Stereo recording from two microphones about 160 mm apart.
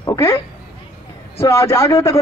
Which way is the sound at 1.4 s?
15° left (ahead or behind).